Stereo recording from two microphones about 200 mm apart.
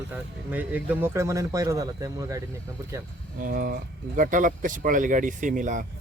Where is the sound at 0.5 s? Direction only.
10° right (ahead or behind).